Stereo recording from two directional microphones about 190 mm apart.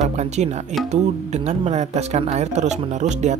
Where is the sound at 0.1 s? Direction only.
35° right (ahead or behind).